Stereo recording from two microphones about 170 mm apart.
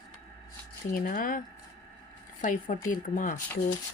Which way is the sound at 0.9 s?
50° left (ahead or behind).